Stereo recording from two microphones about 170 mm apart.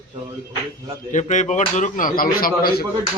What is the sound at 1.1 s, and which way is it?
A man's voice, 45° left (ahead or behind).